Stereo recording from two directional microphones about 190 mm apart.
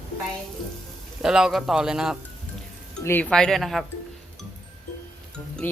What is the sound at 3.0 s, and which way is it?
Speech, 10° left (ahead or behind).